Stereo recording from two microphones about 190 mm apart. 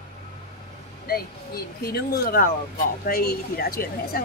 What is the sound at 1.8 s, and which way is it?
Speech, 55° left (ahead or behind).